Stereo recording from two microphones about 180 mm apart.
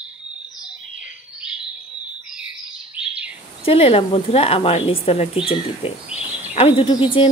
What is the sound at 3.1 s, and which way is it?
Bird, 5° right (ahead or behind).